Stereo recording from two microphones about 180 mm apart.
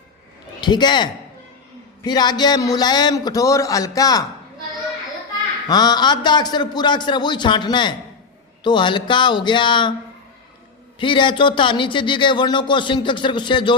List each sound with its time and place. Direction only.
0.6 s speech: 25° left (ahead or behind)
5.6 s speech: 20° left (ahead or behind)
10.9 s speech: 30° left (ahead or behind)